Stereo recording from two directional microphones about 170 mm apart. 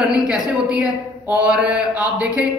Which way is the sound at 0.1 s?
5° right (ahead or behind).